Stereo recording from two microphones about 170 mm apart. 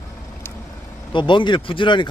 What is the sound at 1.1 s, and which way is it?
Speech, 30° left (ahead or behind).